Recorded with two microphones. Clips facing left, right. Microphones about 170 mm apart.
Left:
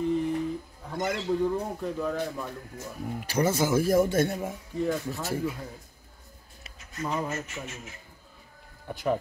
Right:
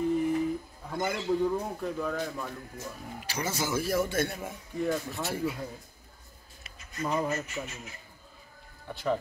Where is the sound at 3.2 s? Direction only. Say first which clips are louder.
Left 8 dB; 55° left (ahead or behind).